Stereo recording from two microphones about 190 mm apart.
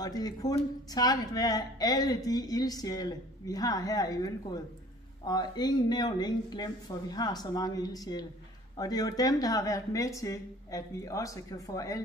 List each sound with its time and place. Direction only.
0.0 s a woman's voice: 20° left (ahead or behind)